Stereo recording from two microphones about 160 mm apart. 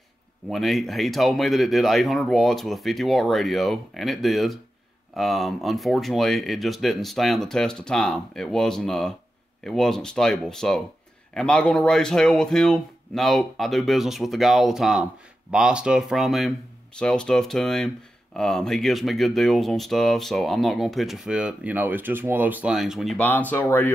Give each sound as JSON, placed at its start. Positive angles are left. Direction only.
{"t": 0.5, "sound": "speech", "side_deg": 0}
{"t": 23.2, "sound": "speech", "side_deg": 10}